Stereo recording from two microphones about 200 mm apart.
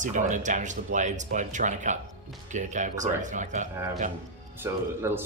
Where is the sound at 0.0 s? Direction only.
40° right (ahead or behind).